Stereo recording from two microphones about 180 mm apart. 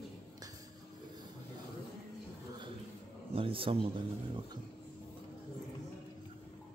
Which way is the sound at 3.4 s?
30° right (ahead or behind).